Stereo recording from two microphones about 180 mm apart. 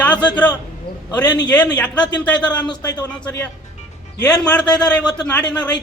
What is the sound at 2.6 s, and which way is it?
Speech, 25° left (ahead or behind).